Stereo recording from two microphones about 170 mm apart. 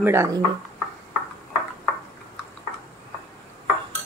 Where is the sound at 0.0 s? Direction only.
15° right (ahead or behind).